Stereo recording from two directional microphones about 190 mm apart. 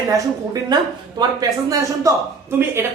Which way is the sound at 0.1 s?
20° right (ahead or behind).